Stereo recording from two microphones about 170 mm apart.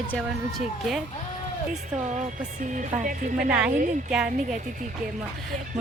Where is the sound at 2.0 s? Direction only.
45° right (ahead or behind).